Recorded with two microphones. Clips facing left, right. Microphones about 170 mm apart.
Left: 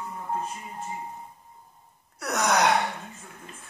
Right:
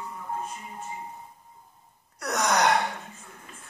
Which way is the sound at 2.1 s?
5° left (ahead or behind).